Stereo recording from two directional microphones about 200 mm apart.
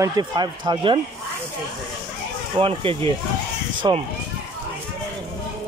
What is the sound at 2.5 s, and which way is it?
Speech, 25° right (ahead or behind).